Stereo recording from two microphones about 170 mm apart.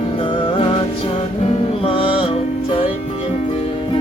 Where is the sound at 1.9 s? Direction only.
30° left (ahead or behind).